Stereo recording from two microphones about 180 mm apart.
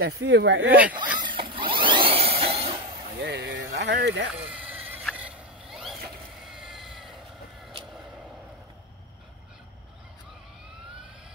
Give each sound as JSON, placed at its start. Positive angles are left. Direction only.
{"t": 0.0, "sound": "speech", "side_deg": -75}
{"t": 0.7, "sound": "speech", "side_deg": -10}
{"t": 1.2, "sound": "a sound", "side_deg": -25}
{"t": 3.2, "sound": "speech", "side_deg": -75}
{"t": 4.5, "sound": "a sound", "side_deg": -10}
{"t": 5.1, "sound": "boat", "side_deg": -5}
{"t": 6.5, "sound": "vehicle", "side_deg": 0}